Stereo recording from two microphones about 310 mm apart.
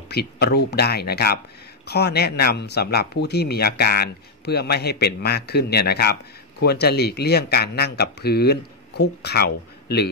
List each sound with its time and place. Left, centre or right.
0.1 s speech: left